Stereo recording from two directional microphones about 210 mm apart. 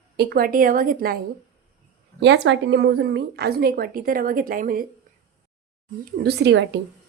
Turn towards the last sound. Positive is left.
turn(degrees=-55)  # may be behind; listen again after turning